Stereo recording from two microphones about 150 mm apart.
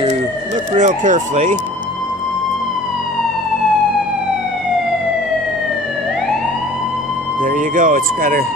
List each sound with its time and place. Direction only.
0.7 s speech: 55° right (ahead or behind)
7.4 s speech: 60° right (ahead or behind)